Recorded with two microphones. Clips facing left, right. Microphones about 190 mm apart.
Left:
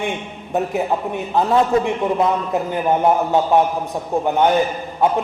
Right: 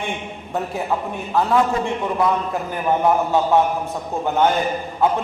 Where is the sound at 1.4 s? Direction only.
20° left (ahead or behind).